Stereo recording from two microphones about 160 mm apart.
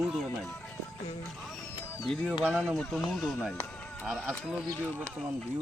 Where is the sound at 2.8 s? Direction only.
5° left (ahead or behind).